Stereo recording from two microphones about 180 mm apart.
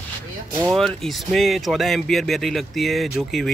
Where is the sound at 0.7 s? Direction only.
Centre (ahead or behind).